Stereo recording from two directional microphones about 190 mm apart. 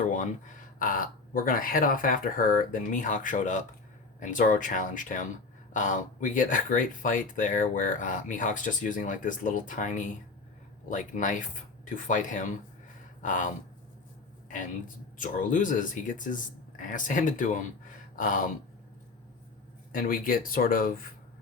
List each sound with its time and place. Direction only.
0.1 s speech: 40° left (ahead or behind)
15.2 s speech: 45° left (ahead or behind)
19.9 s speech: 45° left (ahead or behind)